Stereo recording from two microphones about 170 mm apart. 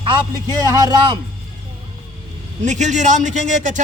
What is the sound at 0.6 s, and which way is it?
Speech, 25° right (ahead or behind).